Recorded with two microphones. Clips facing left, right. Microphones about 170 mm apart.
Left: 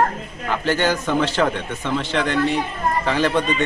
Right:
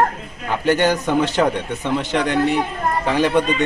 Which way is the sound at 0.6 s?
15° right (ahead or behind).